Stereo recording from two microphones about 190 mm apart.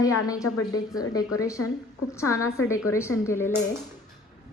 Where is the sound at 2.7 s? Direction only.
15° left (ahead or behind).